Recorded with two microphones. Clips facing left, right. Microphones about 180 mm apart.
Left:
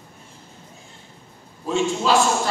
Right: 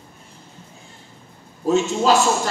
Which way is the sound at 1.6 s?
40° right (ahead or behind).